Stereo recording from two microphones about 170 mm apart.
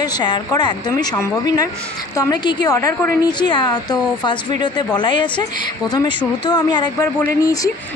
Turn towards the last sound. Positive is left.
turn(degrees=20)  # may be behind; listen again after turning